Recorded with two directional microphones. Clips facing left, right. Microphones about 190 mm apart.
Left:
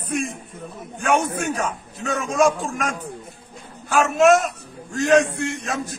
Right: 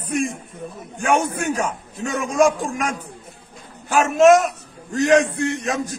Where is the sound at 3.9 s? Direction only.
20° right (ahead or behind).